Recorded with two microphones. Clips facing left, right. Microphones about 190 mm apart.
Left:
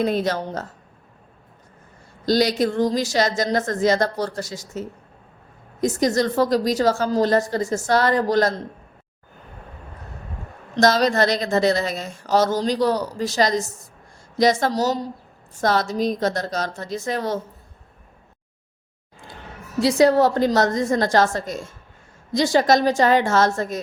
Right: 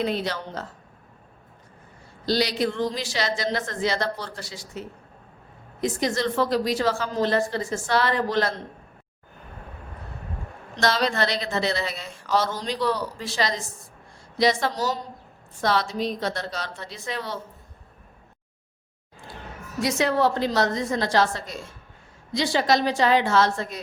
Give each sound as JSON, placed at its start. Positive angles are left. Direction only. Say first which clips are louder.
{"t": 0.0, "sound": "a woman's voice", "louder": "left 5 dB", "side_deg": 45}
{"t": 2.2, "sound": "a woman's voice", "louder": "left 5 dB", "side_deg": 45}
{"t": 10.8, "sound": "a woman's voice", "louder": "left 6 dB", "side_deg": 40}
{"t": 19.8, "sound": "a woman's voice", "louder": "left 6 dB", "side_deg": 35}